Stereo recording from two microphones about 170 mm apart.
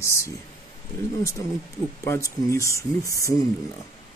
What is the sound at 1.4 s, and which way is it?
Speech, 20° left (ahead or behind).